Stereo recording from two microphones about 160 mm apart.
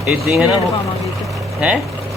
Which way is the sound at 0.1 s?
5° right (ahead or behind).